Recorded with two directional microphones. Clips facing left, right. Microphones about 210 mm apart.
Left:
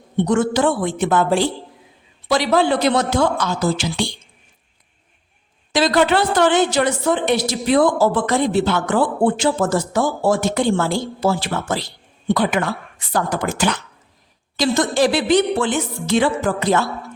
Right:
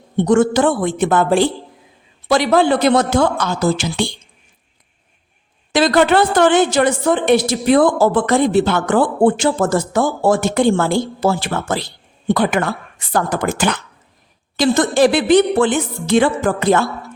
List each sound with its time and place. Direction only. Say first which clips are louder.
0.2 s a woman's voice: right 4 dB; 50° right (ahead or behind)
5.7 s a woman's voice: right 3 dB; 55° right (ahead or behind)